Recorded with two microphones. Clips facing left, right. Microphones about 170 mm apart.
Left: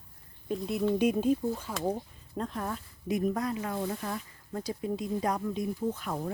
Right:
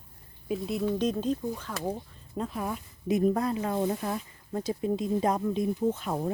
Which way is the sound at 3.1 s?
30° right (ahead or behind).